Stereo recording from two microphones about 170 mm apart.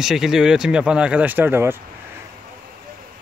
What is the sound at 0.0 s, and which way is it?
Speech, centre (ahead or behind).